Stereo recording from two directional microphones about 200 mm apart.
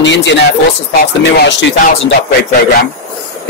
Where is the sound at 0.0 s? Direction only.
65° left (ahead or behind).